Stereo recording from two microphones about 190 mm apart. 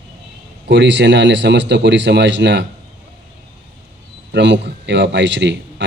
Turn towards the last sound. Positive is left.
turn(degrees=-65)  # may be behind; listen again after turning